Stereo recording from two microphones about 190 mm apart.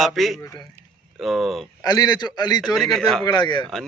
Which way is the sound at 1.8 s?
20° left (ahead or behind).